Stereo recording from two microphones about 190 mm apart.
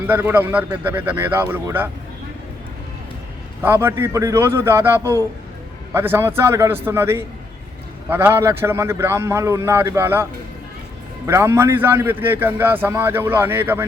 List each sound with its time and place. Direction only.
0.1 s a man's voice: 10° right (ahead or behind)
3.6 s a man's voice: 10° right (ahead or behind)
11.3 s a man's voice: 15° right (ahead or behind)